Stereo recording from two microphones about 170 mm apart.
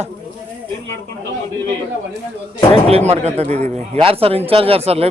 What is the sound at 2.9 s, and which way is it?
A man's voice, 35° right (ahead or behind).